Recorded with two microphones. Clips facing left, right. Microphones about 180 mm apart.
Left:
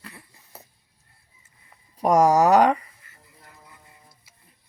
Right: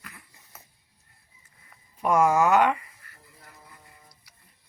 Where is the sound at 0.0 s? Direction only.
30° left (ahead or behind).